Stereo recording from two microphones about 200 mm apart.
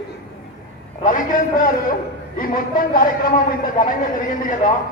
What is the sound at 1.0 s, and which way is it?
A man's voice, 40° left (ahead or behind).